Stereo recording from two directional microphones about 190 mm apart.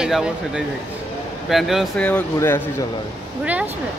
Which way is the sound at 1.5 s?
Centre (ahead or behind).